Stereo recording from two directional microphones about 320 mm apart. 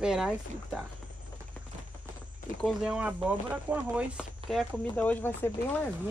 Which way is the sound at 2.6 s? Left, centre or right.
Centre.